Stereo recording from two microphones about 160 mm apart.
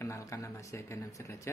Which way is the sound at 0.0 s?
20° left (ahead or behind).